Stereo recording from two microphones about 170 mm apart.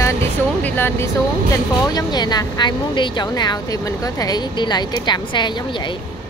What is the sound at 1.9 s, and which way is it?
Speech, 25° left (ahead or behind).